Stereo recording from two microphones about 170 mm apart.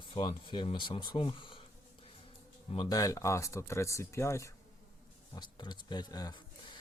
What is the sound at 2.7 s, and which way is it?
Speech, 25° left (ahead or behind).